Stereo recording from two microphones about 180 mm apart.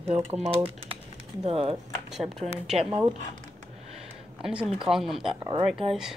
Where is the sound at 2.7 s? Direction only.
30° right (ahead or behind).